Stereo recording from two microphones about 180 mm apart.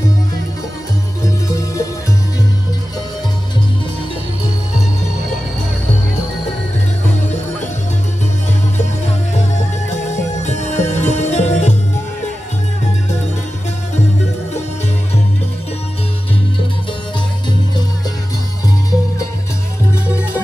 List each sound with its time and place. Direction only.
10.4 s music: 40° left (ahead or behind)